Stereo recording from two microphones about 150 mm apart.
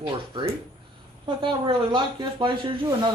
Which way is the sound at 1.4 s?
30° right (ahead or behind).